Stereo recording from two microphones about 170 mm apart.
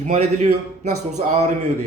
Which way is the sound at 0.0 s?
45° right (ahead or behind).